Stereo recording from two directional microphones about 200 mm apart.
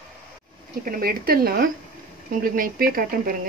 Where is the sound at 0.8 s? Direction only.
45° right (ahead or behind).